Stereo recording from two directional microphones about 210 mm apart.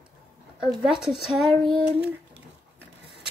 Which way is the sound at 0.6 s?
5° right (ahead or behind).